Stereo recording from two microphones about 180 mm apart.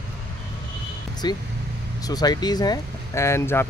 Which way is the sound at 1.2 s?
25° left (ahead or behind).